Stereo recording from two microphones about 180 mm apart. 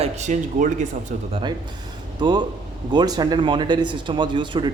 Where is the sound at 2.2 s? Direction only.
25° right (ahead or behind).